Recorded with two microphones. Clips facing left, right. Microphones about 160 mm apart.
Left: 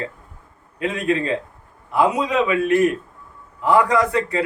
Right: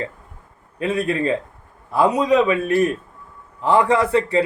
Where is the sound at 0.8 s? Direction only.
35° right (ahead or behind).